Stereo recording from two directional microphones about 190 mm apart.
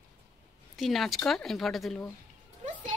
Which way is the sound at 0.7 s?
Centre (ahead or behind).